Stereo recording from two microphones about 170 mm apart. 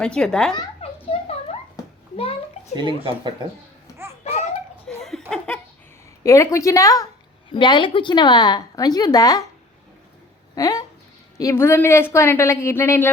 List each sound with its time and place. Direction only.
0.0 s speech: 5° left (ahead or behind)
0.5 s a sound: 35° left (ahead or behind)
2.7 s speech: 30° right (ahead or behind)
4.9 s laughter: 5° left (ahead or behind)
5.3 s laughter: 15° right (ahead or behind)
6.2 s a woman's voice: 15° left (ahead or behind)
10.5 s a woman's voice: 20° left (ahead or behind)